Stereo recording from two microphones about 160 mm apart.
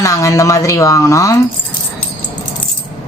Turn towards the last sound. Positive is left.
turn(degrees=20)  # may be behind; listen again after turning